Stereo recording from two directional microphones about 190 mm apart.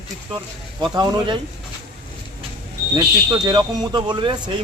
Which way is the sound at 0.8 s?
25° right (ahead or behind).